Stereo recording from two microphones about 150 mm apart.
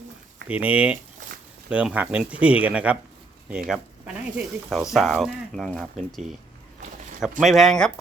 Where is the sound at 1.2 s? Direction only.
55° right (ahead or behind).